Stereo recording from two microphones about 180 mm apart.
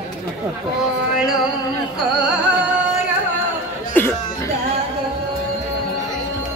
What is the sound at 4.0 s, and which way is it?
Speech, 10° left (ahead or behind).